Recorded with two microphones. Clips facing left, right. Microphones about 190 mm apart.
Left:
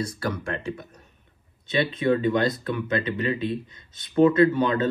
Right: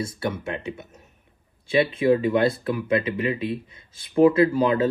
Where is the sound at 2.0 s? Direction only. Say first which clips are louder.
Right 1 dB; 30° right (ahead or behind).